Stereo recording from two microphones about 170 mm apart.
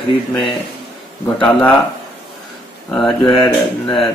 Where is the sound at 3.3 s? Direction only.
25° left (ahead or behind).